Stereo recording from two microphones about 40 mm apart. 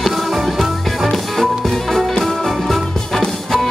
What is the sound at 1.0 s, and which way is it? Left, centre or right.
Music, centre.